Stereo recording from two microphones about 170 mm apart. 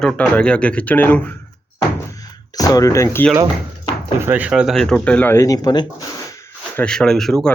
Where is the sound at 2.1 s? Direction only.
20° left (ahead or behind).